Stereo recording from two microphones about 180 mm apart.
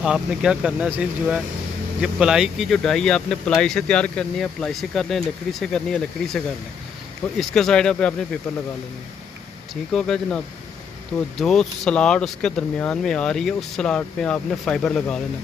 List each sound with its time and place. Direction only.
0.0 s speech: 5° right (ahead or behind)
9.9 s speech: 5° left (ahead or behind)